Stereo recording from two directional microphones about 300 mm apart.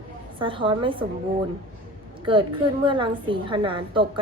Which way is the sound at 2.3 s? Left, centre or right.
Centre.